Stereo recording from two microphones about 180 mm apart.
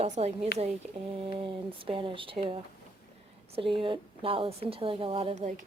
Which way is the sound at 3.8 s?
30° right (ahead or behind).